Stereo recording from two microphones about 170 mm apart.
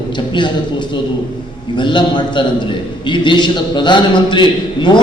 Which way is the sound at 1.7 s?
25° left (ahead or behind).